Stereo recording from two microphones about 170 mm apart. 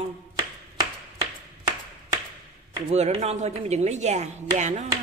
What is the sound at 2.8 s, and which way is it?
Speech, 40° right (ahead or behind).